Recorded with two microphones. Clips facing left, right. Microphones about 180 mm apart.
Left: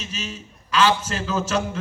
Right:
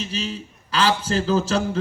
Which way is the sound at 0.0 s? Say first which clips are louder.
Right 5 dB; 30° right (ahead or behind).